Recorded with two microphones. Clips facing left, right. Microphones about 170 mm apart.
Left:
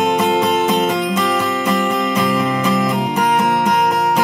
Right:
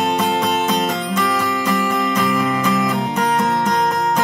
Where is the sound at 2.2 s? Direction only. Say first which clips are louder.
Left 1 dB; 15° left (ahead or behind).